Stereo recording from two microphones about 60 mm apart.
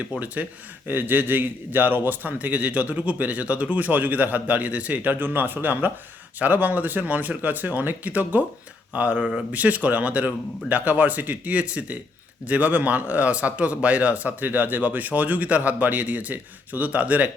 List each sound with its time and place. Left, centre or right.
0.1 s a man's voice: right
9.5 s a man's voice: right